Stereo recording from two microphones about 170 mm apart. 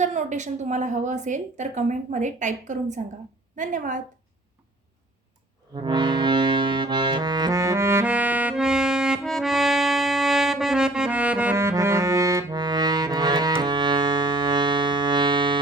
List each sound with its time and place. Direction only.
0.0 s a woman's voice: 45° right (ahead or behind)
5.7 s music: 25° right (ahead or behind)